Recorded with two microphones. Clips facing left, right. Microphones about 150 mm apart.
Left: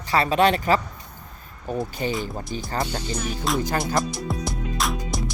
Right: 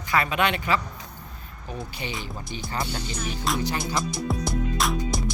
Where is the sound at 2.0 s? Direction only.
40° left (ahead or behind).